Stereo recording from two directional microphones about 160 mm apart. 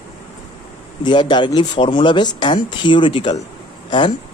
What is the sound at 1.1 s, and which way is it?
Speech, 30° left (ahead or behind).